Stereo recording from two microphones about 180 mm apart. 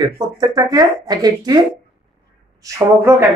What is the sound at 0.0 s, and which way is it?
Speech, 20° right (ahead or behind).